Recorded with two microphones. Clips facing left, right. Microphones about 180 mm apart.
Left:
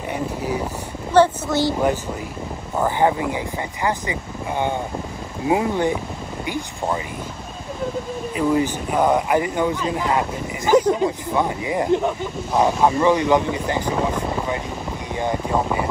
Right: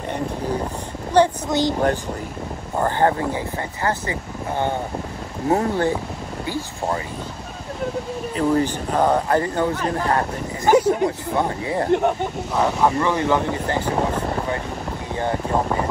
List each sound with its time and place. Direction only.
0.1 s a sound: 10° left (ahead or behind)
1.1 s speech: 15° right (ahead or behind)
2.8 s speech: 10° left (ahead or behind)
8.4 s speech: 10° left (ahead or behind)
10.7 s speech: 10° right (ahead or behind)
11.3 s speech: 15° left (ahead or behind)
15.1 s a sound: 15° left (ahead or behind)